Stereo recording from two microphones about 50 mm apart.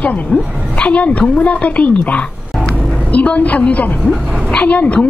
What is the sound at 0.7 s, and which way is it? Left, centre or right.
A woman's voice, left.